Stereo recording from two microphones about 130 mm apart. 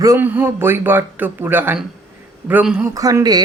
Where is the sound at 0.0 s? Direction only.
20° right (ahead or behind).